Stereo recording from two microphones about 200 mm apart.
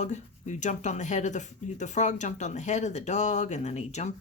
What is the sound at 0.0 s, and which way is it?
Speech, 40° left (ahead or behind).